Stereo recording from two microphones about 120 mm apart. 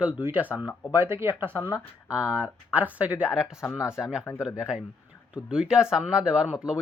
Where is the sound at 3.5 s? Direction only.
25° left (ahead or behind).